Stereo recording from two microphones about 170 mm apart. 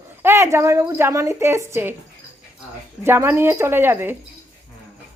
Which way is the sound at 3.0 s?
15° right (ahead or behind).